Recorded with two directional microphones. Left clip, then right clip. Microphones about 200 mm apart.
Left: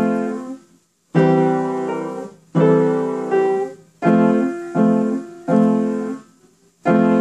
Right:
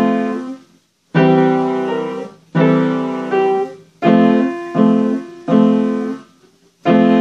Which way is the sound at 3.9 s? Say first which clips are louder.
Right 3 dB; 30° right (ahead or behind).